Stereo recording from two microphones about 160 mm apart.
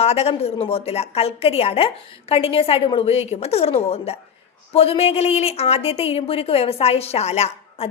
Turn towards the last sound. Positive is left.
turn(degrees=40)  # may be behind; listen again after turning